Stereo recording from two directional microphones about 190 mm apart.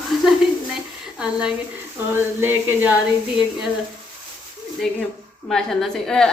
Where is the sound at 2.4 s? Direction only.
10° right (ahead or behind).